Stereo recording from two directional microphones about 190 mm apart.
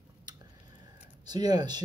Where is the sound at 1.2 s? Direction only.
20° right (ahead or behind).